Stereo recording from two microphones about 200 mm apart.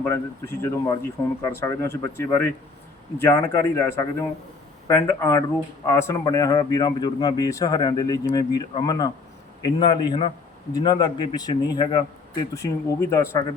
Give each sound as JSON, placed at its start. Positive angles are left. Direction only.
{"t": 0.0, "sound": "a man's voice", "side_deg": 15}